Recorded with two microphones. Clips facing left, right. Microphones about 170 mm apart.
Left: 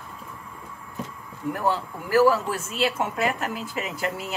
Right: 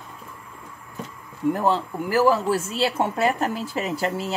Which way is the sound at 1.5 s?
25° right (ahead or behind).